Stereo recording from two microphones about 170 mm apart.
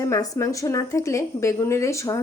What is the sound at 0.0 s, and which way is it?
Speech, 20° left (ahead or behind).